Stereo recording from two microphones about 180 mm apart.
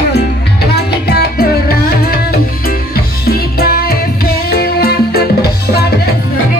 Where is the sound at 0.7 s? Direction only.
60° left (ahead or behind).